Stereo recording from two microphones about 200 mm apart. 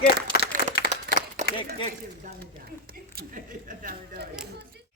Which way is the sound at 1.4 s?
40° right (ahead or behind).